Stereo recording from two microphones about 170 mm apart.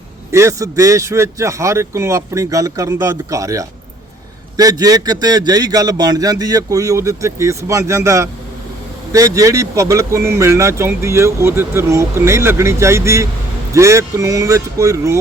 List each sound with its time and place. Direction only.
0.3 s a man's voice: 15° right (ahead or behind)